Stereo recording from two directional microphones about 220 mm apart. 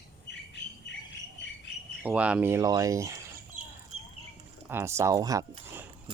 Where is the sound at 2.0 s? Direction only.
5° right (ahead or behind).